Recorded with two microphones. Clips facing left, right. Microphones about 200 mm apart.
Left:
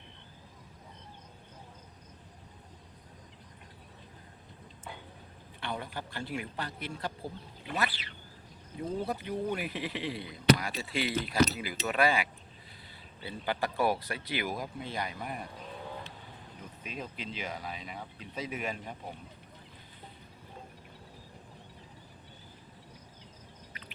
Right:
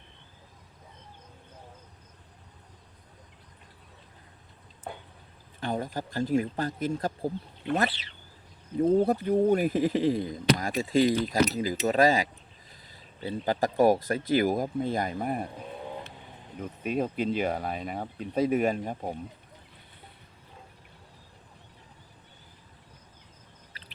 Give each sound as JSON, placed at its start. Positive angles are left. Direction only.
{"t": 4.9, "sound": "a sound", "side_deg": -50}
{"t": 5.5, "sound": "speech", "side_deg": -40}
{"t": 8.8, "sound": "speech", "side_deg": -50}
{"t": 16.6, "sound": "speech", "side_deg": -50}